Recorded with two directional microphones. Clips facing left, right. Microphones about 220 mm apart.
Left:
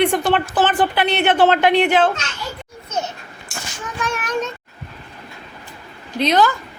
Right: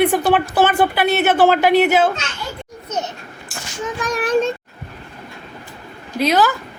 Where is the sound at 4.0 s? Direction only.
35° right (ahead or behind).